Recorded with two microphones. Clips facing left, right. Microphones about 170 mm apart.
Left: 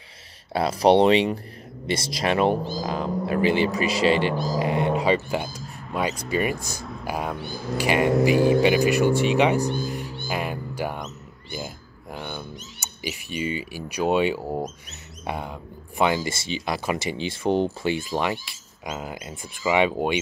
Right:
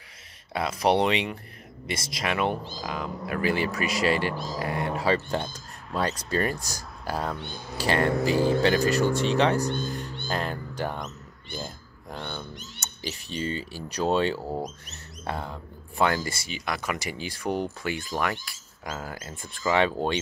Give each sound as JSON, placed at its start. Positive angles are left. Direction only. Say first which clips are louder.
{"t": 0.5, "sound": "speech", "louder": "left 6 dB", "side_deg": 35}
{"t": 5.3, "sound": "a sound", "louder": "left 2 dB", "side_deg": 5}
{"t": 5.9, "sound": "speech", "louder": "left 2 dB", "side_deg": 15}
{"t": 7.4, "sound": "speech", "louder": "left 6 dB", "side_deg": 0}
{"t": 7.7, "sound": "speech", "louder": "left 4 dB", "side_deg": 15}
{"t": 11.1, "sound": "a sound", "louder": "left 3 dB", "side_deg": 10}
{"t": 13.0, "sound": "speech", "louder": "left 3 dB", "side_deg": 15}